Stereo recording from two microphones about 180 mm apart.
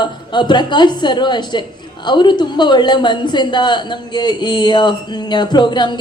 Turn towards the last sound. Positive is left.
turn(degrees=25)  # may be behind; listen again after turning